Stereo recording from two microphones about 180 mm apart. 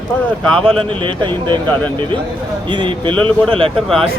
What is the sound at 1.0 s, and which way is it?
Speech, 25° right (ahead or behind).